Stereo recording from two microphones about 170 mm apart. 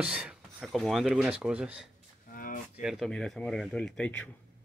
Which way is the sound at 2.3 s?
55° left (ahead or behind).